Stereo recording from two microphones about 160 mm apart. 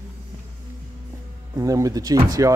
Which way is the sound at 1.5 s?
20° right (ahead or behind).